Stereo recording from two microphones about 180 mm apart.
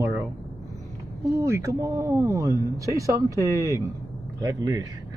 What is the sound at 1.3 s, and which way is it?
Speech, 15° right (ahead or behind).